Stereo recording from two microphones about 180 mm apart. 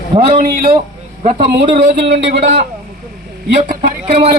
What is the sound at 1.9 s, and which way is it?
Speech, 75° right (ahead or behind).